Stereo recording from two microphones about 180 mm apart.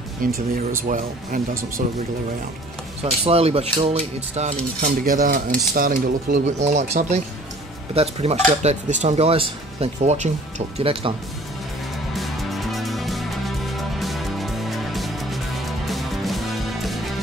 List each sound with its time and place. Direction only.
0.2 s speech: 45° right (ahead or behind)
3.0 s cutlery: 35° right (ahead or behind)
4.4 s speech: 40° right (ahead or behind)
5.8 s cutlery: 50° right (ahead or behind); by 11.1 s 30° right (ahead or behind)
12.2 s music: centre (ahead or behind)